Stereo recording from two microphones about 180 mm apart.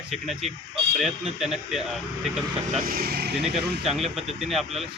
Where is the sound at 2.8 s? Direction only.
55° right (ahead or behind).